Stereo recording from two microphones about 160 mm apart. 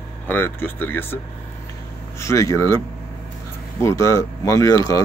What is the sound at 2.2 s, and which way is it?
Speech, 20° left (ahead or behind).